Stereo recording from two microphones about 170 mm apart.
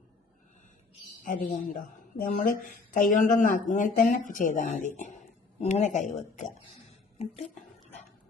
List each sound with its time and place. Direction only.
1.2 s speech: 50° left (ahead or behind)